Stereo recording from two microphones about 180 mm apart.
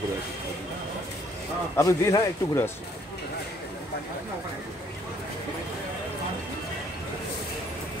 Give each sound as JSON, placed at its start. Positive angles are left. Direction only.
{"t": 1.8, "sound": "a man's voice", "side_deg": 20}